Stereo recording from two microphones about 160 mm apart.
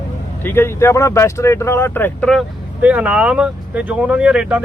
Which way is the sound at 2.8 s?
10° right (ahead or behind).